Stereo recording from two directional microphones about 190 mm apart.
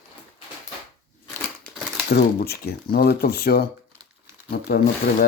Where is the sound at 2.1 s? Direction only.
55° left (ahead or behind).